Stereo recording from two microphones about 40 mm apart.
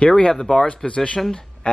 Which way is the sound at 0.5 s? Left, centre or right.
Left.